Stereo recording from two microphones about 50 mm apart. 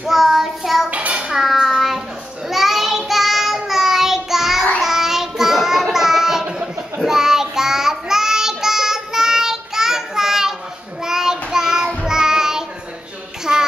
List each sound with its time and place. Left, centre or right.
0.0 s child singing: centre
0.8 s child singing: right
1.3 s child singing: centre